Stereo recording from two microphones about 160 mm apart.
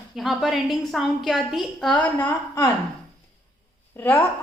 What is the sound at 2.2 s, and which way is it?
Speech, 20° left (ahead or behind).